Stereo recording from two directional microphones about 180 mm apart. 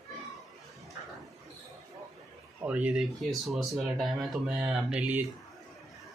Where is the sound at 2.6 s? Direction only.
5° right (ahead or behind).